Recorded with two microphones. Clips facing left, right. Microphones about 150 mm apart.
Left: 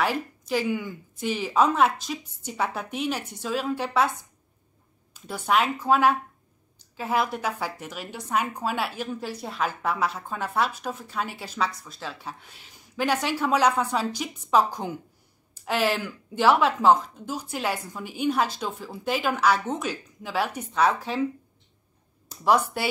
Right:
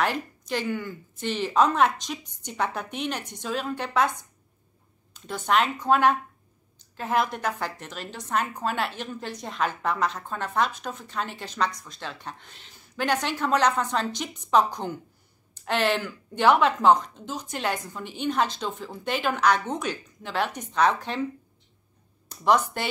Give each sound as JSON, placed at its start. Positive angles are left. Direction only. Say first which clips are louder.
{"t": 0.0, "sound": "a woman's voice", "louder": "left 1 dB", "side_deg": 5}
{"t": 5.1, "sound": "a woman's voice", "louder": "even", "side_deg": 10}
{"t": 22.3, "sound": "speech", "louder": "even", "side_deg": 5}